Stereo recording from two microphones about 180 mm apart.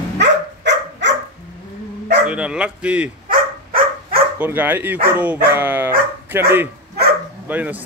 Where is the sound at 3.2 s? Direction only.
50° right (ahead or behind).